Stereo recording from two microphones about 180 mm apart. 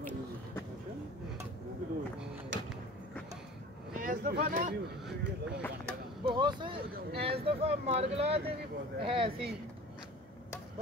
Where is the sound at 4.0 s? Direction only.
50° right (ahead or behind).